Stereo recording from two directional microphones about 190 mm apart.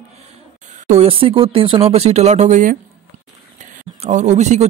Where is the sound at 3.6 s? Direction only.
40° right (ahead or behind).